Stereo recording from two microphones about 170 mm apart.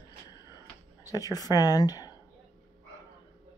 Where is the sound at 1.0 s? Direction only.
20° left (ahead or behind).